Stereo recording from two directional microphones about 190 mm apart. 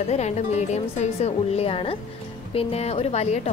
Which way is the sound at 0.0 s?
35° left (ahead or behind).